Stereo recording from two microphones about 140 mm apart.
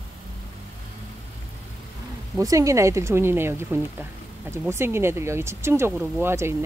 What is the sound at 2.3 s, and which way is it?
Speech, 25° right (ahead or behind).